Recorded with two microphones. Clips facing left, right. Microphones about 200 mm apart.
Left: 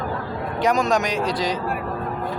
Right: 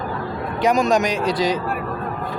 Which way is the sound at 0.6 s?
10° right (ahead or behind).